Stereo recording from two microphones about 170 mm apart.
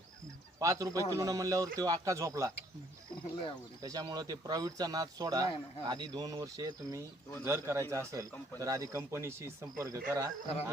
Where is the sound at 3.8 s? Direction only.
20° right (ahead or behind).